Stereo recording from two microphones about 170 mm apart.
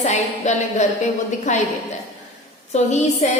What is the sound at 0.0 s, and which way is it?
A woman's voice, 45° left (ahead or behind).